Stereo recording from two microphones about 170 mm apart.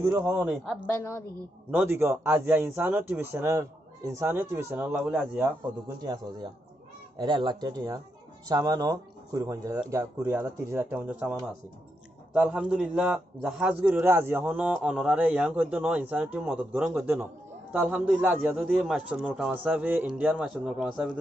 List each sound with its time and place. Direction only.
0.0 s a man's voice: 10° right (ahead or behind)
0.7 s a woman's voice: 15° left (ahead or behind)
1.7 s a man's voice: 10° right (ahead or behind)
6.0 s a man's voice: 25° right (ahead or behind); by 11.3 s 10° right (ahead or behind)
12.4 s a man's voice: 5° right (ahead or behind)